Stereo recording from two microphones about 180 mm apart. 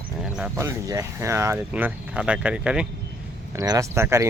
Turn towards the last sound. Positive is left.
turn(degrees=-15)  # may be behind; listen again after turning